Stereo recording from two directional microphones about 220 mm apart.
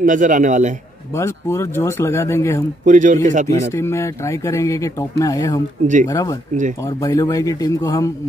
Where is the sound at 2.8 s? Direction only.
35° right (ahead or behind).